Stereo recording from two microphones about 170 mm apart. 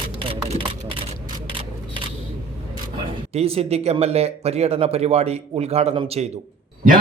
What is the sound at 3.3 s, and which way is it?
Speech, 35° right (ahead or behind).